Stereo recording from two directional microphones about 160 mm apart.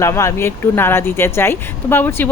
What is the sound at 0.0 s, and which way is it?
Speech, 15° left (ahead or behind).